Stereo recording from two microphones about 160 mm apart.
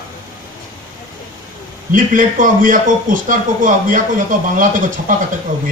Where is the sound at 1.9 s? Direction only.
55° right (ahead or behind).